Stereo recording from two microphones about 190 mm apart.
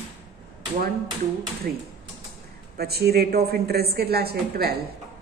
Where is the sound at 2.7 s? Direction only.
55° right (ahead or behind).